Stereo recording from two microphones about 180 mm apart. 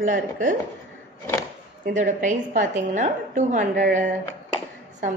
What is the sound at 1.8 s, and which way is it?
A woman's voice, 45° right (ahead or behind).